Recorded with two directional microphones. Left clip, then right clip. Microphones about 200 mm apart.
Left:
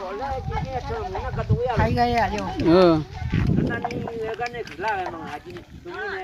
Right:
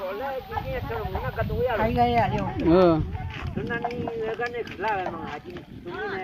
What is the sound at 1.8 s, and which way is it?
Speech, 5° right (ahead or behind).